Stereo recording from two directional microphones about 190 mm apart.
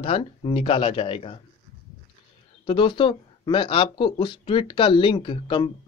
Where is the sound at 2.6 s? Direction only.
25° left (ahead or behind).